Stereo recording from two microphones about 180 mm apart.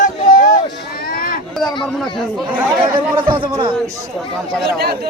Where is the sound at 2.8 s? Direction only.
25° right (ahead or behind).